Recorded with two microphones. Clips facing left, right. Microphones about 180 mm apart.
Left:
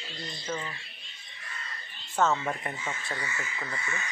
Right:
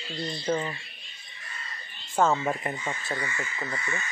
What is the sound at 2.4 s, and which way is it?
Speech, 15° right (ahead or behind).